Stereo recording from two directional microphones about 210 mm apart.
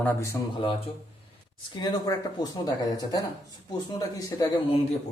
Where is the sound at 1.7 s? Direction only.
20° left (ahead or behind).